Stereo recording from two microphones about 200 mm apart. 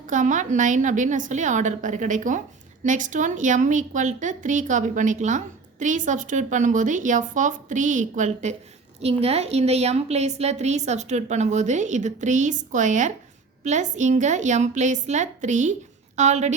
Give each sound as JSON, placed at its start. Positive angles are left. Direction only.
{"t": 0.1, "sound": "a woman's voice", "side_deg": -40}